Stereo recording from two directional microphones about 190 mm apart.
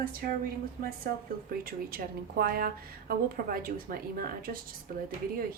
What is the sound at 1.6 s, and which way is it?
Speech, 50° right (ahead or behind).